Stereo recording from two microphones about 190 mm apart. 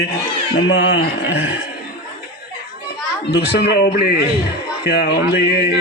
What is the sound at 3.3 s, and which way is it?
Speech, 55° left (ahead or behind).